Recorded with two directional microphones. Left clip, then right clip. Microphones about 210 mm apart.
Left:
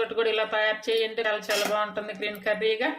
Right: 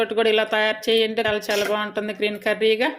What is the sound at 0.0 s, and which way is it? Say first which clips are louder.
Speech: right 6 dB; 35° right (ahead or behind).